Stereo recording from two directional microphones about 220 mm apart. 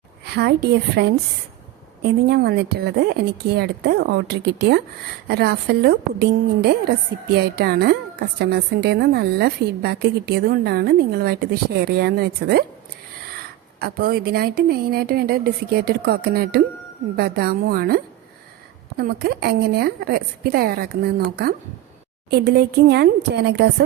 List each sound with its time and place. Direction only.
0.3 s a woman's voice: 50° right (ahead or behind)
13.7 s a woman's voice: 45° right (ahead or behind)